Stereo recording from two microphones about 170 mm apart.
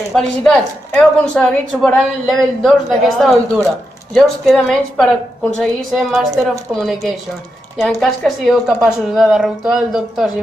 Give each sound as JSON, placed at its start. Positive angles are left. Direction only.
{"t": 0.1, "sound": "a woman's voice", "side_deg": 5}